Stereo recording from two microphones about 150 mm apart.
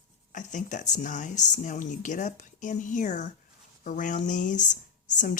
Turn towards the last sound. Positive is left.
turn(degrees=55)  # may be behind; listen again after turning